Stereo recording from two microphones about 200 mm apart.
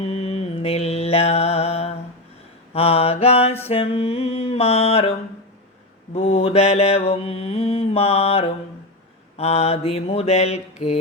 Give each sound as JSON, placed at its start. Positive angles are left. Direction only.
{"t": 0.0, "sound": "mantra", "side_deg": 30}
{"t": 2.7, "sound": "music", "side_deg": 30}
{"t": 6.1, "sound": "mantra", "side_deg": 30}